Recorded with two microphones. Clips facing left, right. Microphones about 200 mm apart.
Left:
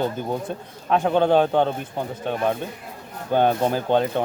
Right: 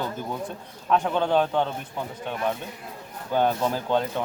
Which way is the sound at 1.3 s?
35° left (ahead or behind).